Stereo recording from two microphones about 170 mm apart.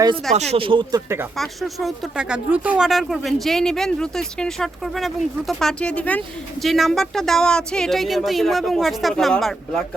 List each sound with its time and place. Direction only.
0.3 s speech: 35° right (ahead or behind); by 1.3 s 20° right (ahead or behind)
1.4 s speech: centre (ahead or behind)